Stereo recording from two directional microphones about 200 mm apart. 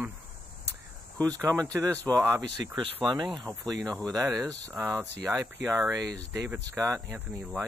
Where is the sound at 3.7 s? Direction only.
20° right (ahead or behind).